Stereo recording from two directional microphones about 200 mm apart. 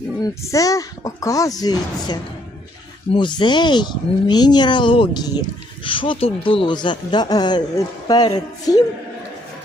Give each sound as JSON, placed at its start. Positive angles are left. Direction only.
{"t": 0.2, "sound": "speech", "side_deg": 15}